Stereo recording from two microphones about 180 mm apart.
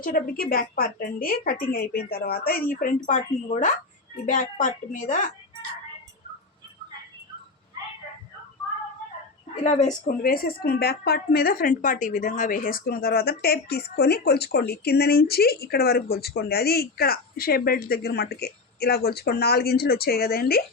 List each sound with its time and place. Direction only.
0.0 s a woman's voice: 50° left (ahead or behind)
9.6 s a woman's voice: 45° left (ahead or behind)